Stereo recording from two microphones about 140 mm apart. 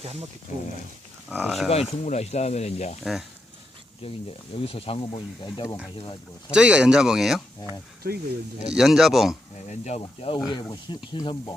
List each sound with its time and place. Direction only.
0.0 s speech: 50° right (ahead or behind)
0.5 s speech: 60° left (ahead or behind)
1.4 s speech: centre (ahead or behind)
2.0 s speech: 50° left (ahead or behind)
3.0 s speech: centre (ahead or behind)
4.0 s speech: 45° left (ahead or behind)
6.5 s speech: 5° right (ahead or behind)
8.7 s speech: centre (ahead or behind)
9.6 s speech: 50° left (ahead or behind)
10.5 s speech: 30° left (ahead or behind)